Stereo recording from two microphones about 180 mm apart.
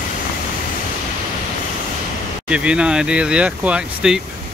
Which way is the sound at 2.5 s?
5° right (ahead or behind).